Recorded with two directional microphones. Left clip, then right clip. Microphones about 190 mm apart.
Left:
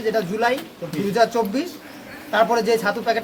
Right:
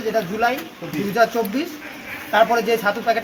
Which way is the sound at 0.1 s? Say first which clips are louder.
Right 1 dB; 25° left (ahead or behind).